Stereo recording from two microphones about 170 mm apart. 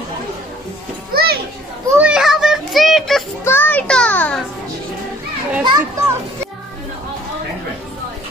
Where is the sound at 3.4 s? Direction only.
10° left (ahead or behind).